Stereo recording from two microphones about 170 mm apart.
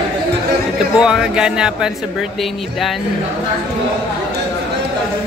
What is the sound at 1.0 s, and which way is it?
Speech, 5° right (ahead or behind).